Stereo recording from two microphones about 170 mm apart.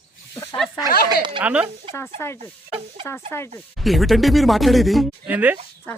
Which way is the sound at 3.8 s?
Centre (ahead or behind).